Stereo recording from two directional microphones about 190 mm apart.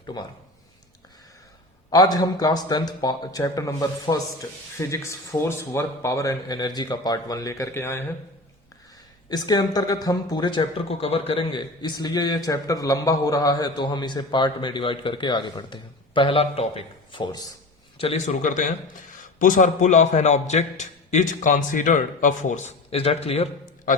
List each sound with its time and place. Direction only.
1.9 s speech: 20° left (ahead or behind)
9.3 s a man's voice: 20° left (ahead or behind)